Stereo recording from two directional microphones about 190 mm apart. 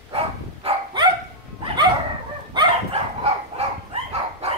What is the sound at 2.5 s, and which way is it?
Dog, 25° right (ahead or behind).